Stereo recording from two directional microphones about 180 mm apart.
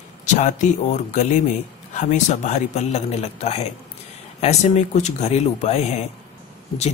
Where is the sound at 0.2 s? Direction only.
40° left (ahead or behind).